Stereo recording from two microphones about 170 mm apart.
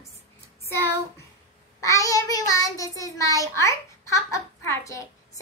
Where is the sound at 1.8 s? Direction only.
20° left (ahead or behind).